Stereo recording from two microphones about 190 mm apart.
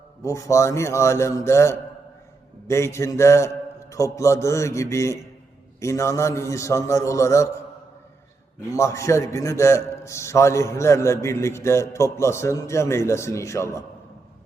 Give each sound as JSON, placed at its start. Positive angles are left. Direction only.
{"t": 0.2, "sound": "a man's voice", "side_deg": 15}
{"t": 8.7, "sound": "a man's voice", "side_deg": 15}